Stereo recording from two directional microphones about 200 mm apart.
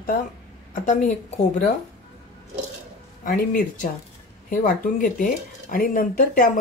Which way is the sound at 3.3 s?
45° left (ahead or behind).